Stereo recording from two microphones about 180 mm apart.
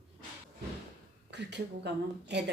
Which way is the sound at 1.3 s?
70° right (ahead or behind).